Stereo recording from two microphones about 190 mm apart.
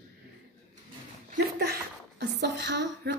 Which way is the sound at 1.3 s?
60° right (ahead or behind).